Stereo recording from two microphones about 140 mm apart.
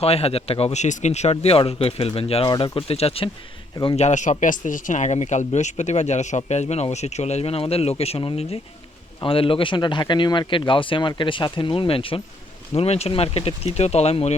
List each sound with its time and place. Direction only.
0.0 s speech: 45° left (ahead or behind)
3.9 s speech: 55° left (ahead or behind)